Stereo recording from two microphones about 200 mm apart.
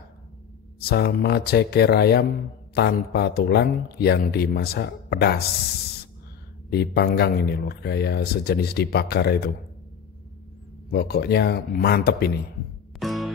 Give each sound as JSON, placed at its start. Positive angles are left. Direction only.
{"t": 0.7, "sound": "speech", "side_deg": 50}
{"t": 6.7, "sound": "speech", "side_deg": 55}
{"t": 10.9, "sound": "speech", "side_deg": 50}
{"t": 13.0, "sound": "music", "side_deg": 0}